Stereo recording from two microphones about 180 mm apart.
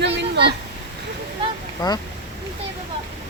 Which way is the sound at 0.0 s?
70° right (ahead or behind).